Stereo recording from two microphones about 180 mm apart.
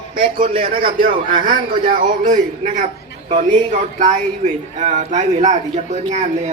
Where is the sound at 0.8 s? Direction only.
50° right (ahead or behind).